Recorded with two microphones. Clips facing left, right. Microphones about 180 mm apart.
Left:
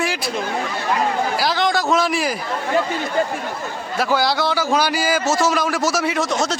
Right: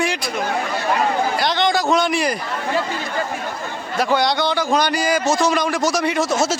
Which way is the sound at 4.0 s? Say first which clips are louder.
Right 1 dB; centre (ahead or behind).